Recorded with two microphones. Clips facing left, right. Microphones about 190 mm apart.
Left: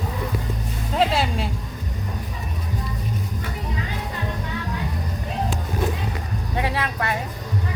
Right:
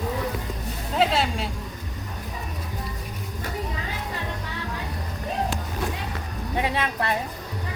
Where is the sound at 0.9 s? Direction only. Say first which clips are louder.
Left 1 dB; centre (ahead or behind).